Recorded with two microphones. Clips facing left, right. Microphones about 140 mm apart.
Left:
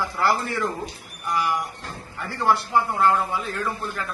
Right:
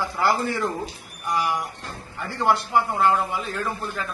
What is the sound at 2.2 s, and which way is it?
Speech, 15° right (ahead or behind).